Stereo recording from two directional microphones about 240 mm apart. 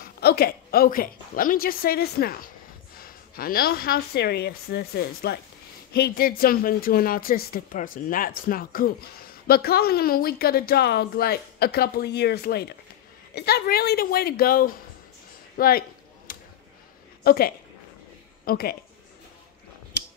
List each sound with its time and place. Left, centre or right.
0.0 s speech: left
16.3 s a sound: left
17.2 s a woman's voice: left